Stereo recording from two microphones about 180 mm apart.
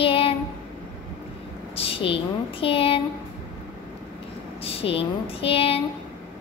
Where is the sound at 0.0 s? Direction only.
30° left (ahead or behind).